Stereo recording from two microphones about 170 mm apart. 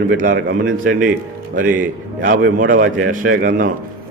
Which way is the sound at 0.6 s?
55° right (ahead or behind).